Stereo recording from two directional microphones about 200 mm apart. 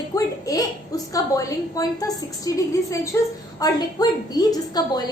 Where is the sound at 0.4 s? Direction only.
15° left (ahead or behind).